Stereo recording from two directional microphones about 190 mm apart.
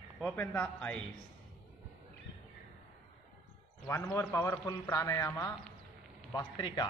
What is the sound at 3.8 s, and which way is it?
A man's voice, 10° left (ahead or behind).